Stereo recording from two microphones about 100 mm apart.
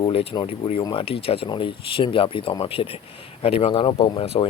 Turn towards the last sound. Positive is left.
turn(degrees=55)  # may be behind; listen again after turning